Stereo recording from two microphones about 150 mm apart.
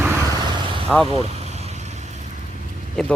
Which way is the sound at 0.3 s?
30° right (ahead or behind).